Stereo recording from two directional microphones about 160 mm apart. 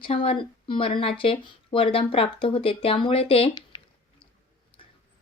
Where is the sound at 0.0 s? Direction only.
35° left (ahead or behind).